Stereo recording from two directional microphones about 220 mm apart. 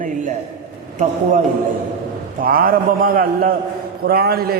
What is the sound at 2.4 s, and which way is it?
A man's voice, 40° right (ahead or behind).